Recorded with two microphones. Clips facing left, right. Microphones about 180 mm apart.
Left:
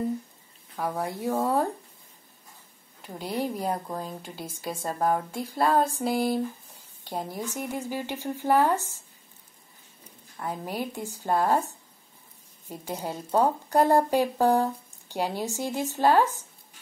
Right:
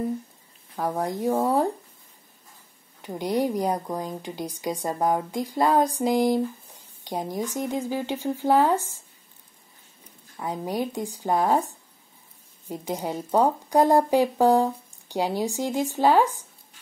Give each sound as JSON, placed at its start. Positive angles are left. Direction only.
{"t": 0.7, "sound": "speech", "side_deg": -15}
{"t": 3.1, "sound": "speech", "side_deg": -15}
{"t": 10.3, "sound": "speech", "side_deg": -15}